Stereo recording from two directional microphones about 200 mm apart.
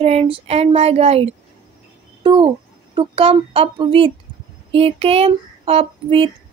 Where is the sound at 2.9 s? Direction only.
25° right (ahead or behind).